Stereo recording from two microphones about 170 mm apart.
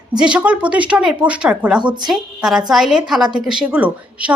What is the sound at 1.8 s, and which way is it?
Speech, 25° right (ahead or behind).